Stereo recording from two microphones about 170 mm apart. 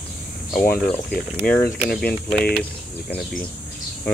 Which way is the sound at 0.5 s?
55° left (ahead or behind).